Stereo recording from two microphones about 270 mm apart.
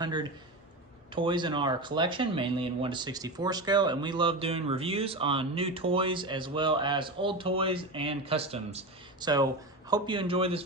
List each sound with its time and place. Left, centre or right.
0.0 s speech: centre